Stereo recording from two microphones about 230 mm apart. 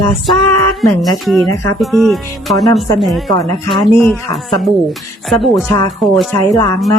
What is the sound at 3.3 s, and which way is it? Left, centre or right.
Speech, left.